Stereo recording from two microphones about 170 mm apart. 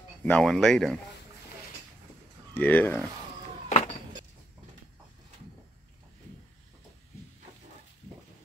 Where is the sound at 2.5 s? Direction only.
10° left (ahead or behind).